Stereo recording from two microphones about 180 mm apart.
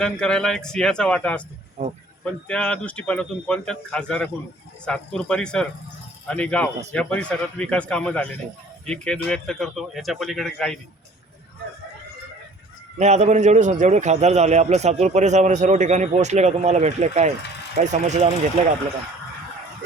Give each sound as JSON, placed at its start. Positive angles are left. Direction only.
{"t": 0.0, "sound": "speech", "side_deg": 5}
{"t": 1.8, "sound": "a man's voice", "side_deg": -40}
{"t": 2.2, "sound": "speech", "side_deg": 5}
{"t": 13.0, "sound": "a man's voice", "side_deg": -40}